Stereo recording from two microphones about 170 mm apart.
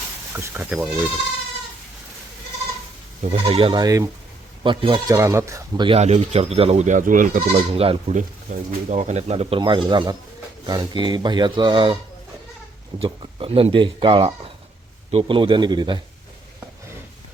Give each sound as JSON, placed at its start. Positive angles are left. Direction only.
{"t": 0.3, "sound": "speech", "side_deg": -10}
{"t": 3.3, "sound": "speech", "side_deg": -30}
{"t": 6.0, "sound": "speech", "side_deg": -40}
{"t": 7.5, "sound": "speech", "side_deg": -35}
{"t": 13.0, "sound": "speech", "side_deg": -35}